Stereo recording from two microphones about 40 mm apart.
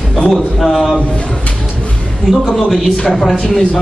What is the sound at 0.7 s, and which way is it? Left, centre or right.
Speech, centre.